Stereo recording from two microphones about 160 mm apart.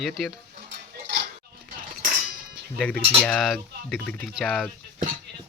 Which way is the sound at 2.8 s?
5° left (ahead or behind).